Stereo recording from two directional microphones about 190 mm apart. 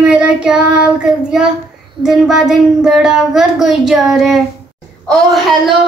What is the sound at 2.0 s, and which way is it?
A child's voice, centre (ahead or behind).